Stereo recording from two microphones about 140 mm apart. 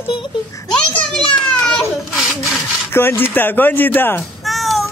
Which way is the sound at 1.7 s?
Centre (ahead or behind).